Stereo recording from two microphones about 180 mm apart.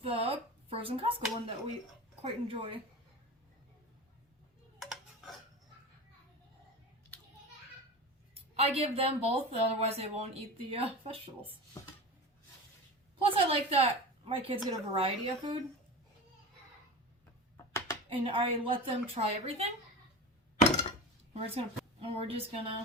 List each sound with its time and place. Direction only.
0.0 s speech: 30° right (ahead or behind)
4.8 s a sound: centre (ahead or behind)
8.5 s speech: 35° right (ahead or behind)
13.2 s speech: 30° right (ahead or behind)
18.1 s speech: 30° right (ahead or behind)
21.3 s a woman's voice: 35° right (ahead or behind)